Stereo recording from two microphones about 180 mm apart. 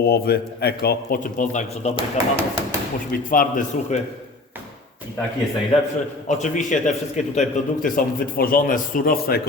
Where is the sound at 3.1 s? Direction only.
50° left (ahead or behind).